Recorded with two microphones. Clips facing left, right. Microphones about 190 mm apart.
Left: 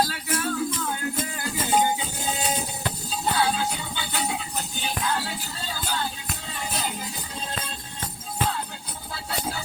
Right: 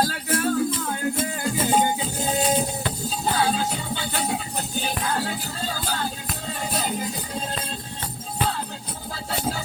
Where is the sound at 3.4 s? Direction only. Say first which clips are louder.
Right 2 dB; 35° right (ahead or behind).